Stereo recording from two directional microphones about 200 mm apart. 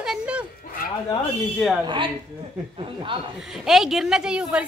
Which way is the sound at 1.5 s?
Centre (ahead or behind).